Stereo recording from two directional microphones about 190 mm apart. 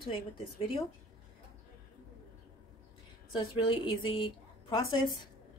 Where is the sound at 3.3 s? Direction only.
25° left (ahead or behind).